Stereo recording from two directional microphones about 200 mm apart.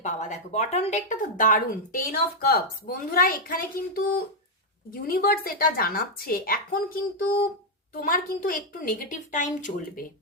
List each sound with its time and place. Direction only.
0.0 s speech: 35° left (ahead or behind)
4.9 s speech: 50° left (ahead or behind)